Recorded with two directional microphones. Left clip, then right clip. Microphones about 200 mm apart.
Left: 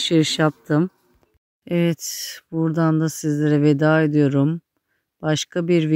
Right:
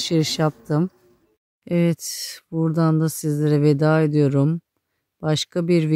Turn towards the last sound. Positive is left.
turn(degrees=0)  # may be behind; listen again after turning